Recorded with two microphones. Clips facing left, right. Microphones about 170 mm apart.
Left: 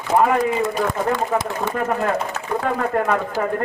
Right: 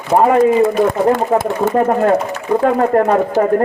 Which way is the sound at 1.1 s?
50° right (ahead or behind).